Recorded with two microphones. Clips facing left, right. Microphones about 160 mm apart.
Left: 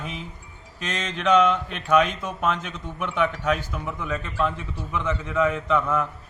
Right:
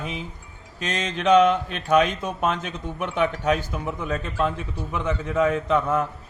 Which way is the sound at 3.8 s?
25° right (ahead or behind).